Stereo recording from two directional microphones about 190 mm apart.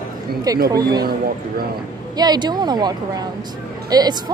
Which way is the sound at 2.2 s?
20° right (ahead or behind).